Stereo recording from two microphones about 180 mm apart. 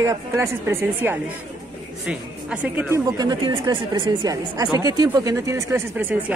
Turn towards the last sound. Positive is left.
turn(degrees=-10)  # may be behind; listen again after turning